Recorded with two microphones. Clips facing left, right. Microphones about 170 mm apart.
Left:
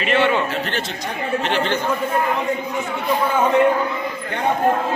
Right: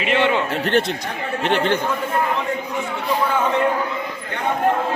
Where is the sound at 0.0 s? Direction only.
15° right (ahead or behind).